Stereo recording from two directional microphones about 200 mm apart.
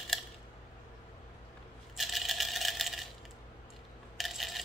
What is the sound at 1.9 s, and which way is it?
Coin, centre (ahead or behind).